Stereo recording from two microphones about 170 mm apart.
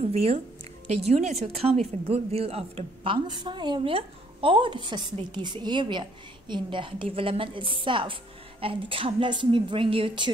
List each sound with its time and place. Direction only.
0.1 s a woman's voice: 35° right (ahead or behind)